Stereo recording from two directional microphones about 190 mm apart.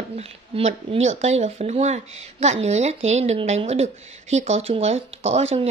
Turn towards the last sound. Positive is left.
turn(degrees=-35)  # may be behind; listen again after turning